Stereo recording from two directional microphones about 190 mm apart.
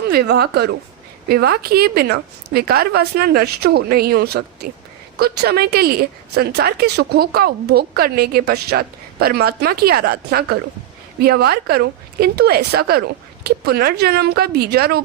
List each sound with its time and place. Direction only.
0.1 s speech: 55° right (ahead or behind)